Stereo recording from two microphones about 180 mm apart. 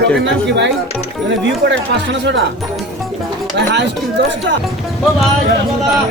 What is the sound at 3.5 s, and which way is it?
Speech, 70° right (ahead or behind).